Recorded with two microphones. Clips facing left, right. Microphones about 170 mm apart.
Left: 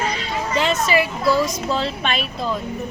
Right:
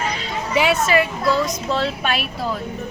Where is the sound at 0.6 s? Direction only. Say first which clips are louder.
Right 3 dB; 10° right (ahead or behind).